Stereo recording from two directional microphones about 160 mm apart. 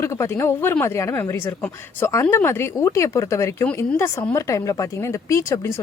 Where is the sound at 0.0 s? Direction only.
20° left (ahead or behind).